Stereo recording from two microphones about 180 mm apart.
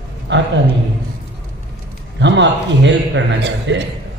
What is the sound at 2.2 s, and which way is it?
A man's voice, 85° right.